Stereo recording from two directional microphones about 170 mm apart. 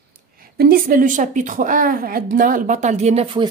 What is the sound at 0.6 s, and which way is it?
A woman's voice, 60° right (ahead or behind).